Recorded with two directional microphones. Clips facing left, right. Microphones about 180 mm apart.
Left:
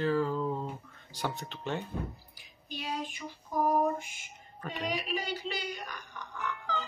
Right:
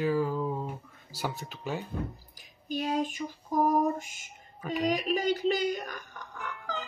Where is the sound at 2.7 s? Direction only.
45° right (ahead or behind).